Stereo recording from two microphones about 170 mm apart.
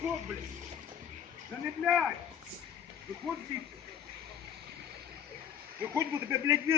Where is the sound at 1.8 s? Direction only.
Centre (ahead or behind).